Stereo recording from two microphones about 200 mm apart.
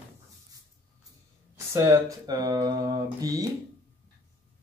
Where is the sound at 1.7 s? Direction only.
15° right (ahead or behind).